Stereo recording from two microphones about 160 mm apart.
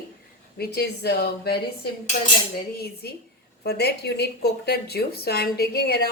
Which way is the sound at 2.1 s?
50° left (ahead or behind).